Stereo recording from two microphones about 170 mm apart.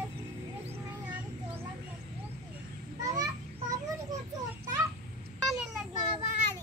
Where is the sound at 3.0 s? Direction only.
20° right (ahead or behind).